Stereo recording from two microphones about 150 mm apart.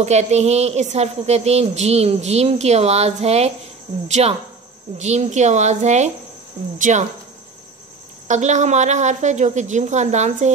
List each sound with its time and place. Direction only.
0.0 s a woman's voice: 50° right (ahead or behind)
8.3 s a woman's voice: 50° right (ahead or behind)